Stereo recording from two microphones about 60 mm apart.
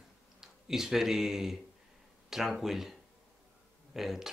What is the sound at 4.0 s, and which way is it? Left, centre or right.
Speech, centre.